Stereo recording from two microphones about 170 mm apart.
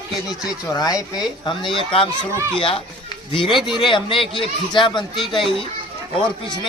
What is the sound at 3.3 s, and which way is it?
A man's voice, 30° left (ahead or behind).